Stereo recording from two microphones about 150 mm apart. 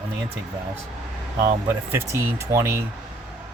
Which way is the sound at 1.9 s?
15° right (ahead or behind).